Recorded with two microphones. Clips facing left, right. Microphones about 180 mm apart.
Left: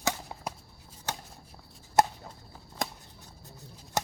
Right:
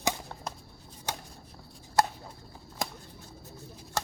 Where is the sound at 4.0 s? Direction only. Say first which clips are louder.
Left 2 dB; 15° left (ahead or behind).